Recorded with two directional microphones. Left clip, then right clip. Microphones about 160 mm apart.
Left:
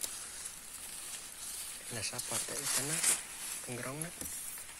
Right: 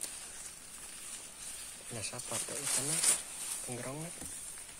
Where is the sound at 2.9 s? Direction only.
65° right (ahead or behind).